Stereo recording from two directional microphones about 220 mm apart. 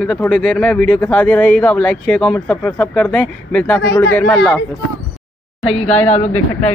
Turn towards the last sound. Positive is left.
turn(degrees=30)  # may be behind; listen again after turning